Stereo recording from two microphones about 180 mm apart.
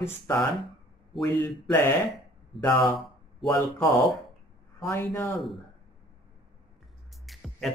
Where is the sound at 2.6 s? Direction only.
15° left (ahead or behind).